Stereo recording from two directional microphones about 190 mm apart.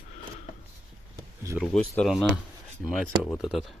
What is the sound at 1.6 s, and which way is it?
Speech, centre (ahead or behind).